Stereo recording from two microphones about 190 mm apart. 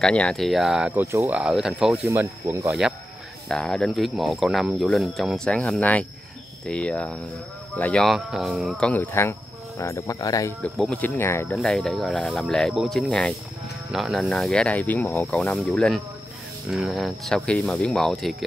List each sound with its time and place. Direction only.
0.0 s speech: 5° left (ahead or behind)
2.0 s speech: 15° right (ahead or behind)
3.4 s speech: 5° left (ahead or behind)
10.6 s speech: 5° left (ahead or behind)
11.5 s speech: centre (ahead or behind)